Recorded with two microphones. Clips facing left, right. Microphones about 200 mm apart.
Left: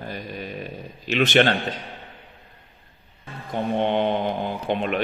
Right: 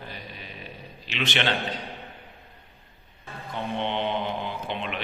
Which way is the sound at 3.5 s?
45° left (ahead or behind).